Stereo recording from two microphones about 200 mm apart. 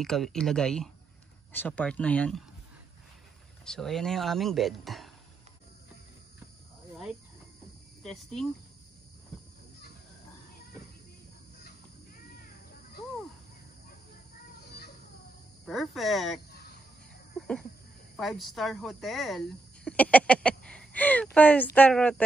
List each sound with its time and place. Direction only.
0.0 s speech: centre (ahead or behind)
3.6 s speech: centre (ahead or behind)
8.0 s speech: centre (ahead or behind)
15.6 s speech: centre (ahead or behind)
18.1 s speech: centre (ahead or behind)